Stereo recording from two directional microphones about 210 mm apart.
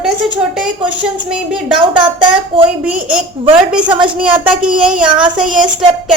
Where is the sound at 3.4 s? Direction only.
25° right (ahead or behind).